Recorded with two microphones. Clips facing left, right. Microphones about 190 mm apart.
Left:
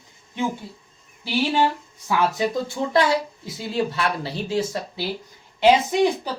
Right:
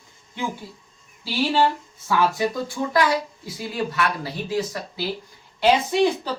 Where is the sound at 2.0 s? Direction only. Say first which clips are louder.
Even; 20° left (ahead or behind).